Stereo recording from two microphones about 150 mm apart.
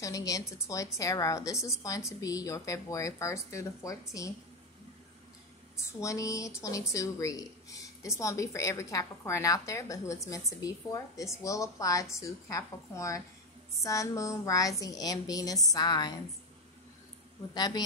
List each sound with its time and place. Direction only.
0.0 s speech: 20° left (ahead or behind)
5.9 s speech: 20° left (ahead or behind)
17.6 s speech: 25° left (ahead or behind)